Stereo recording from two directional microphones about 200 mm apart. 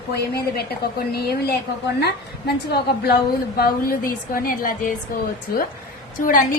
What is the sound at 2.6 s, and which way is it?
A woman's voice, 50° left (ahead or behind).